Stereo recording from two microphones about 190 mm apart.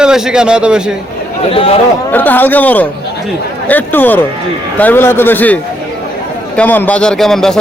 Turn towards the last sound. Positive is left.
turn(degrees=0)  # may be behind; listen again after turning